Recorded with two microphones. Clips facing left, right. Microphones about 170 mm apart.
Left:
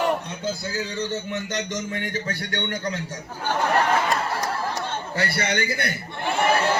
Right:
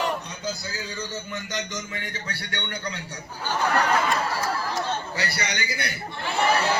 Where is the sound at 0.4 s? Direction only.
25° left (ahead or behind).